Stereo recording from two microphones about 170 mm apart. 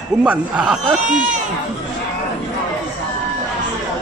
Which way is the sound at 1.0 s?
50° right (ahead or behind).